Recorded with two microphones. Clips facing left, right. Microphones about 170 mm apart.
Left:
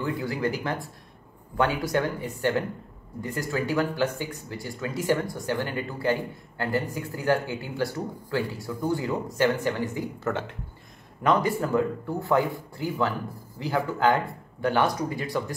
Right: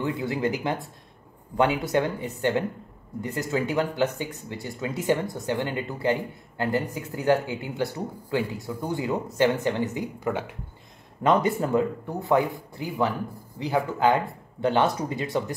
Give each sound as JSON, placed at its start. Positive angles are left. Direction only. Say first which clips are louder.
{"t": 0.0, "sound": "speech", "louder": "right 1 dB", "side_deg": -20}
{"t": 11.2, "sound": "speech", "louder": "right 2 dB", "side_deg": -25}